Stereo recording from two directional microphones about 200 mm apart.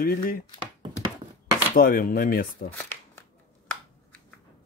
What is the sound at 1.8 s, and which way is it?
Speech, 45° left (ahead or behind).